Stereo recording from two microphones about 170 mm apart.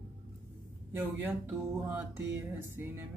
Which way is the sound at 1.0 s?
10° right (ahead or behind).